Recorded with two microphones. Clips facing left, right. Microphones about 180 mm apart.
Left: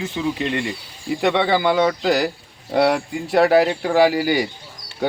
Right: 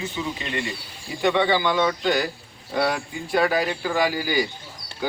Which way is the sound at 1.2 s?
75° left (ahead or behind).